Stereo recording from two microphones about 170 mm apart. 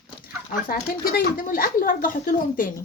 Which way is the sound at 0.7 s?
60° left (ahead or behind).